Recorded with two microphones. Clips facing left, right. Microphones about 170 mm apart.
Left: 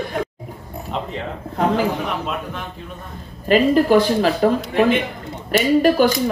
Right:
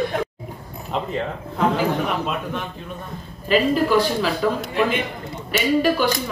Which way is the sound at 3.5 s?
45° left (ahead or behind).